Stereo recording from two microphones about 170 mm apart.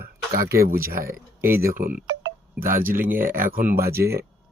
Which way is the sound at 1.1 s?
15° right (ahead or behind).